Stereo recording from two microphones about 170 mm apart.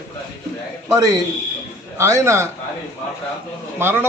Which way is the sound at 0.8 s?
20° right (ahead or behind).